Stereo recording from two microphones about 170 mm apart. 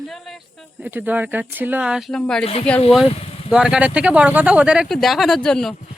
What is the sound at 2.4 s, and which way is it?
Speech, 35° left (ahead or behind).